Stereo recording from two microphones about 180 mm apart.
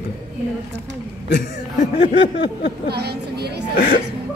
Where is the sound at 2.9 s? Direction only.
65° right (ahead or behind).